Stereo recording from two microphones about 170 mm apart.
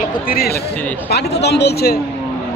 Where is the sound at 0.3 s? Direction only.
65° left (ahead or behind).